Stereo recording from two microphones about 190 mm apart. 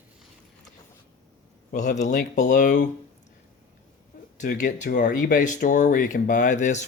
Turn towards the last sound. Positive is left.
turn(degrees=40)  # may be behind; listen again after turning